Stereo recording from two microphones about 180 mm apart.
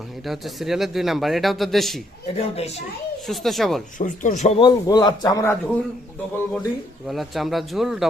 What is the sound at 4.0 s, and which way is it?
Speech, 45° left (ahead or behind).